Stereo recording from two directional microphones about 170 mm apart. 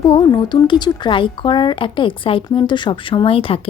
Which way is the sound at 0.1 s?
30° left (ahead or behind).